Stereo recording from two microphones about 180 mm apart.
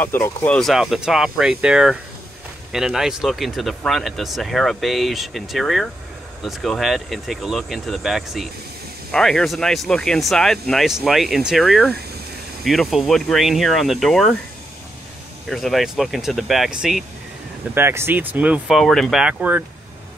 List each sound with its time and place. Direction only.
0.0 s speech: 15° left (ahead or behind)
0.6 s speech: centre (ahead or behind)
15.5 s speech: centre (ahead or behind)
17.7 s speech: 10° right (ahead or behind)